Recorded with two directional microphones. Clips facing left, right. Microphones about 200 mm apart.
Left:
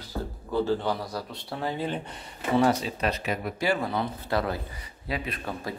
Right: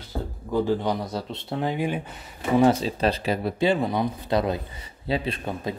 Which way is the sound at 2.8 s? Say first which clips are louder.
Right 5 dB; 30° right (ahead or behind).